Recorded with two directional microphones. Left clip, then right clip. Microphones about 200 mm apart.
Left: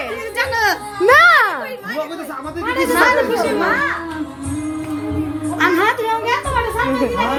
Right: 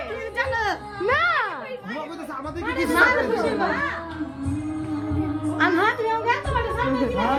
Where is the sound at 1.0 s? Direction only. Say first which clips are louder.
Left 11 dB; 40° left (ahead or behind).